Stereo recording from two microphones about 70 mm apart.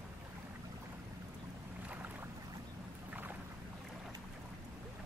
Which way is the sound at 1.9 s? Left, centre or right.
Right.